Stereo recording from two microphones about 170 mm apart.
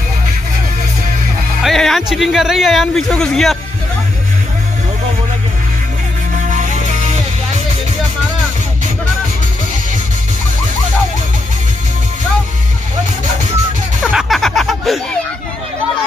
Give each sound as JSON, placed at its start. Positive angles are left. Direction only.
{"t": 1.6, "sound": "speech", "side_deg": 0}
{"t": 6.5, "sound": "music", "side_deg": -45}
{"t": 14.1, "sound": "a sound", "side_deg": 0}